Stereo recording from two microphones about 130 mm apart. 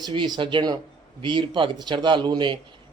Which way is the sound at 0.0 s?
35° right (ahead or behind).